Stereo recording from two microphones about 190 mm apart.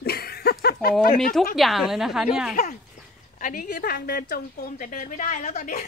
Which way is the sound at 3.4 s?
45° left (ahead or behind).